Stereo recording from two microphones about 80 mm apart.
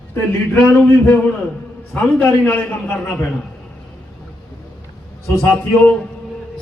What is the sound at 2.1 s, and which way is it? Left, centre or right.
Speech, left.